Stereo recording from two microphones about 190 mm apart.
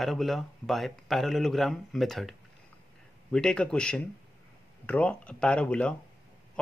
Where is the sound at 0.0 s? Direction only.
Centre (ahead or behind).